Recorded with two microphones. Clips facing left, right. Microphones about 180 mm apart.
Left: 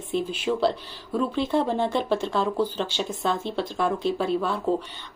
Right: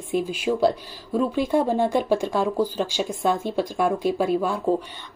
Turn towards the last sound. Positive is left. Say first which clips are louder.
# right 3 dB
turn(degrees=-10)  # may be behind; listen again after turning